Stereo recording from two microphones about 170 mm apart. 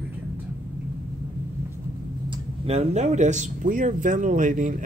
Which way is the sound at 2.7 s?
40° right (ahead or behind).